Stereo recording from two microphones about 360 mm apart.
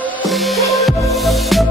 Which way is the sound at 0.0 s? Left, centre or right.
Centre.